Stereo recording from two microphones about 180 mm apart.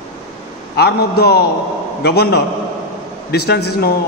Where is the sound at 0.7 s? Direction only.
65° left (ahead or behind).